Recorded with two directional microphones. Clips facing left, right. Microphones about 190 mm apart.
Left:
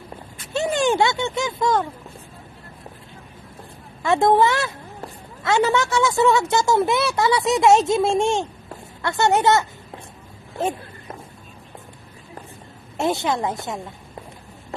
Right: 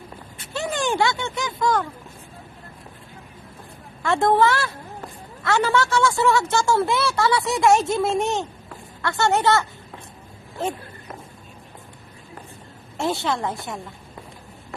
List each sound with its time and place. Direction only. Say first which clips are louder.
0.5 s a sound: left 5 dB; 20° left (ahead or behind)
1.6 s speech: left 1 dB; 25° left (ahead or behind)
4.0 s speech: left 2 dB; 20° left (ahead or behind)
12.9 s speech: left 2 dB; 20° left (ahead or behind)